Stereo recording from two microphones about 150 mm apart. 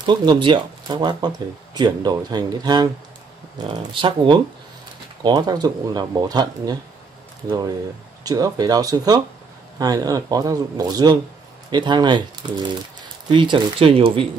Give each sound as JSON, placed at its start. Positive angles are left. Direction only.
{"t": 0.0, "sound": "speech", "side_deg": -30}
{"t": 8.2, "sound": "speech", "side_deg": -25}